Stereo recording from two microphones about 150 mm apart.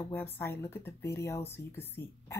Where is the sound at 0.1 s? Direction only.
15° left (ahead or behind).